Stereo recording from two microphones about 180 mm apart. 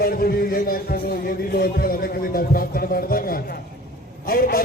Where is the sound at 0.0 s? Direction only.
55° left (ahead or behind).